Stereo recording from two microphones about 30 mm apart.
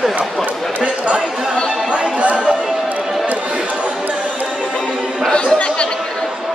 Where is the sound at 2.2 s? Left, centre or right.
Right.